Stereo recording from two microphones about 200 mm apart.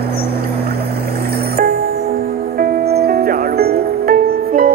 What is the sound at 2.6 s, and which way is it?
Music, 50° right (ahead or behind).